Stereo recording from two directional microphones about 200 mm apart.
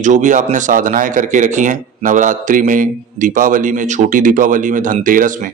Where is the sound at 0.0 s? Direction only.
40° right (ahead or behind).